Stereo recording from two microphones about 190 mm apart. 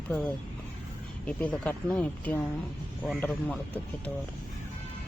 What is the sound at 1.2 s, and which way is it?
Speech, 10° left (ahead or behind).